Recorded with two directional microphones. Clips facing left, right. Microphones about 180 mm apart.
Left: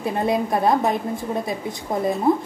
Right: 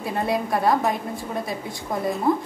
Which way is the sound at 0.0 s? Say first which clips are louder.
Left 3 dB; 20° left (ahead or behind).